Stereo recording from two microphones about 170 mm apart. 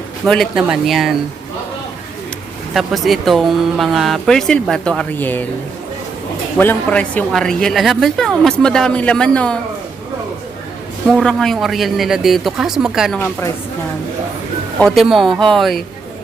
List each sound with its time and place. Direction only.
0.3 s a woman's voice: centre (ahead or behind)
2.7 s a woman's voice: centre (ahead or behind)
6.6 s a woman's voice: 10° left (ahead or behind)
11.1 s a woman's voice: 5° left (ahead or behind)
14.8 s a woman's voice: centre (ahead or behind)